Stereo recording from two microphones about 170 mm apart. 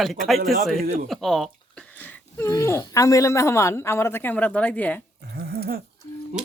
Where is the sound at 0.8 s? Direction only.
55° right (ahead or behind).